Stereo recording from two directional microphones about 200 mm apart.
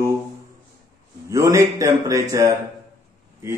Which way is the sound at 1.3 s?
15° right (ahead or behind).